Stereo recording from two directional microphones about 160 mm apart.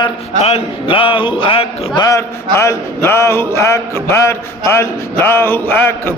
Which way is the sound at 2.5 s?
15° left (ahead or behind).